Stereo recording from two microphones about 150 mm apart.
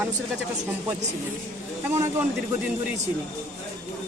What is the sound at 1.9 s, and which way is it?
Speech, 15° right (ahead or behind).